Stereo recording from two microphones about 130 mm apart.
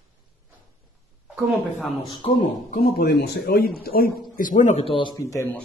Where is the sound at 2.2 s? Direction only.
65° left (ahead or behind).